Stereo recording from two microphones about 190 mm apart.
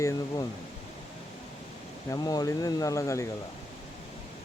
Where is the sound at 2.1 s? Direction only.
20° left (ahead or behind).